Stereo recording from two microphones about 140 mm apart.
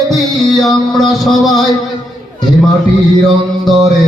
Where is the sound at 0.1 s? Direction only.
Centre (ahead or behind).